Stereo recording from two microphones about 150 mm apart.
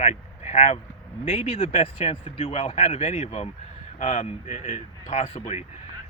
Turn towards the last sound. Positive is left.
turn(degrees=50)  # may be behind; listen again after turning